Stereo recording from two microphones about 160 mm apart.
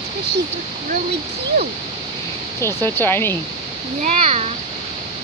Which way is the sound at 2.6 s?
15° left (ahead or behind).